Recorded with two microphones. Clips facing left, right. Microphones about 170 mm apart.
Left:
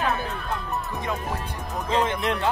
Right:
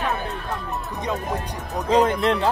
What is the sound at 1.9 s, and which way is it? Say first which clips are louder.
Speech: right 6 dB; 40° right (ahead or behind).